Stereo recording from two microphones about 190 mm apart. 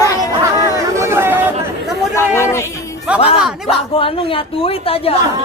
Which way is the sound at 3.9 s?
30° left (ahead or behind).